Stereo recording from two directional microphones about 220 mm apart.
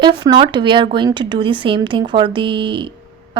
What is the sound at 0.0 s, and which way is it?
Speech, 20° right (ahead or behind).